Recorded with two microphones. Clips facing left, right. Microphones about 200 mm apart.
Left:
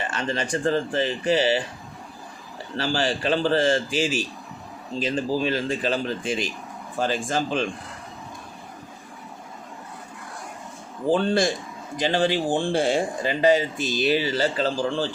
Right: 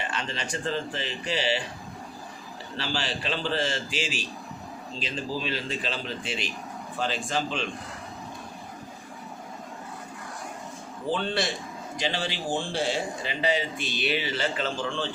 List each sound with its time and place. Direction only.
0.1 s speech: 50° left (ahead or behind)
2.7 s speech: 45° left (ahead or behind)
11.1 s speech: 45° left (ahead or behind)